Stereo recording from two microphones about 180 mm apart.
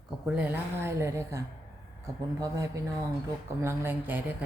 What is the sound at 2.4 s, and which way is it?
A woman's voice, 15° right (ahead or behind).